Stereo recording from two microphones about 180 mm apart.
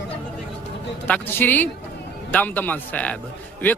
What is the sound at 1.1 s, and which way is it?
A man's voice, 10° left (ahead or behind).